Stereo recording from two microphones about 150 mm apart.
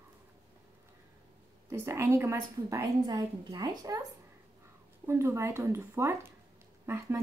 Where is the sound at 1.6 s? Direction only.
15° right (ahead or behind).